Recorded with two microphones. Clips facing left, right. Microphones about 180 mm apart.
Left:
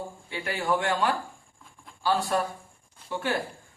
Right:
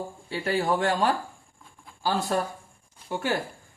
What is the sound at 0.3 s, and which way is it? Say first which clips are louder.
Speech: right 3 dB; 35° right (ahead or behind).